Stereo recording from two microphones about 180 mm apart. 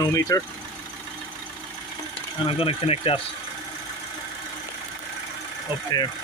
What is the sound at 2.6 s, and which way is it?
Speech, 30° left (ahead or behind).